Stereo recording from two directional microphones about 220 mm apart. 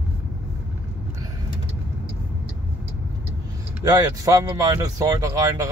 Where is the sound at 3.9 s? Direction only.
15° right (ahead or behind).